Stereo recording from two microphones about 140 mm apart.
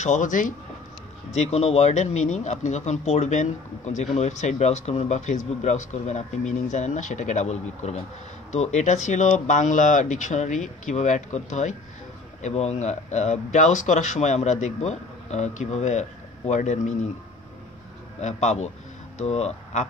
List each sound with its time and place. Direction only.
0.0 s speech: 60° left (ahead or behind)
1.3 s speech: 50° left (ahead or behind)
18.2 s speech: 55° left (ahead or behind)